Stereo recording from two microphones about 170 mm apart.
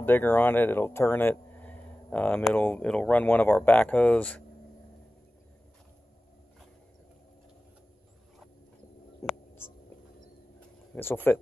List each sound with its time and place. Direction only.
0.0 s speech: 10° left (ahead or behind)
9.2 s a sound: 20° left (ahead or behind)
10.9 s speech: 5° left (ahead or behind)